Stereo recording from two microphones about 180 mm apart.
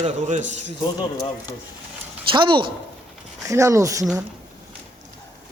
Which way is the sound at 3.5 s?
15° right (ahead or behind).